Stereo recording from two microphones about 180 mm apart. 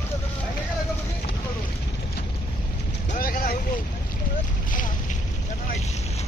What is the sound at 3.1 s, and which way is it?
Vehicle, 50° left (ahead or behind).